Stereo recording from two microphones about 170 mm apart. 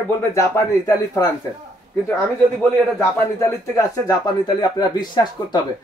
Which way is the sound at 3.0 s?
15° left (ahead or behind).